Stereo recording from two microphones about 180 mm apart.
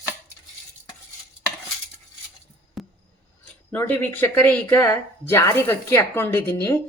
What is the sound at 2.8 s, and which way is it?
Music, centre (ahead or behind).